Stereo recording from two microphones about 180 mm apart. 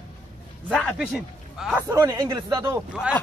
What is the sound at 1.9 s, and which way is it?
Speech, 20° right (ahead or behind).